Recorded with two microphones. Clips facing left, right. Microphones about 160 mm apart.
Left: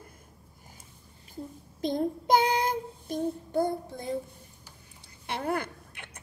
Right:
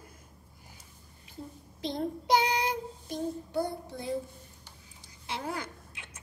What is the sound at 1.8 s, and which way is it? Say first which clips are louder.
Child singing: left 5 dB; 50° left (ahead or behind).